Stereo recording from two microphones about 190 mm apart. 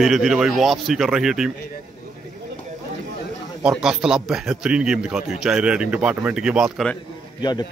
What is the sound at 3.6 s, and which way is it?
A man's voice, 5° right (ahead or behind).